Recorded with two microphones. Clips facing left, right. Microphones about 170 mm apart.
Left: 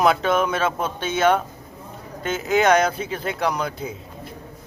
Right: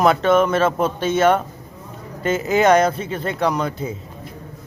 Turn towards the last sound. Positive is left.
turn(degrees=0)  # may be behind; listen again after turning